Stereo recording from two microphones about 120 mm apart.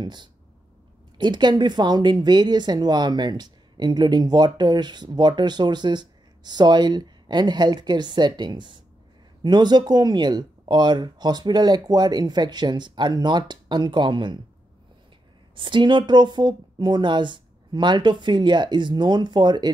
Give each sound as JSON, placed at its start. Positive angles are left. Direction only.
{"t": 0.0, "sound": "speech", "side_deg": -40}
{"t": 15.5, "sound": "speech", "side_deg": -45}